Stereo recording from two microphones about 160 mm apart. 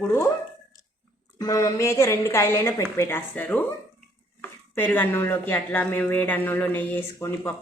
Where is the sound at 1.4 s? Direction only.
20° left (ahead or behind).